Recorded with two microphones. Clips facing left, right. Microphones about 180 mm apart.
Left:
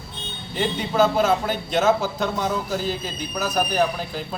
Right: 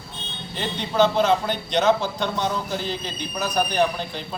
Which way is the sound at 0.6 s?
5° left (ahead or behind).